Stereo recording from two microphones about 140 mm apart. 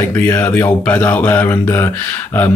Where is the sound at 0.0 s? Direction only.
15° left (ahead or behind).